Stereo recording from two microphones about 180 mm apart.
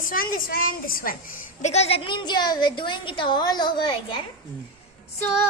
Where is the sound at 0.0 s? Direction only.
50° left (ahead or behind).